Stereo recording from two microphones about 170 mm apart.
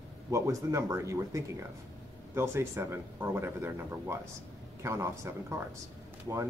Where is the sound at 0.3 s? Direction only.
20° right (ahead or behind).